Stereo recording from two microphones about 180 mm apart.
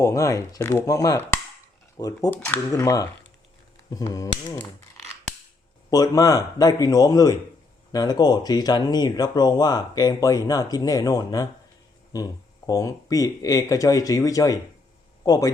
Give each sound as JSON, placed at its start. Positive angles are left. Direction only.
{"t": 0.0, "sound": "chopping", "side_deg": 15}
{"t": 2.0, "sound": "speech", "side_deg": 20}
{"t": 5.9, "sound": "speech", "side_deg": 20}